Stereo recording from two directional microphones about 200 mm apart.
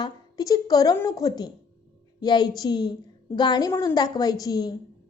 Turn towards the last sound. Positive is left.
turn(degrees=20)  # may be behind; listen again after turning